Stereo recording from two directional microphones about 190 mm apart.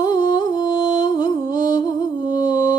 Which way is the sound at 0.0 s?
25° left (ahead or behind).